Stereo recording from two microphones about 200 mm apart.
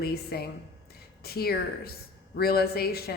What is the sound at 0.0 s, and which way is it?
A woman's voice, 50° left (ahead or behind).